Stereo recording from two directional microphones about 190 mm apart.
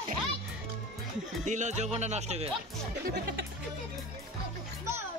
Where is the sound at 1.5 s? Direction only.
40° right (ahead or behind).